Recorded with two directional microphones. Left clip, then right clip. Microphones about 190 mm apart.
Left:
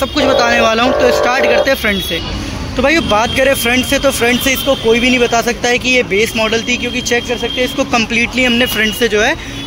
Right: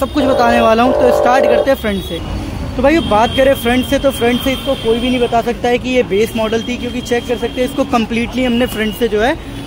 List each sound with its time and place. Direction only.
0.1 s speech: 25° right (ahead or behind)
2.8 s speech: 5° right (ahead or behind)
5.0 s speech: 5° left (ahead or behind)
5.9 s speech: 20° right (ahead or behind)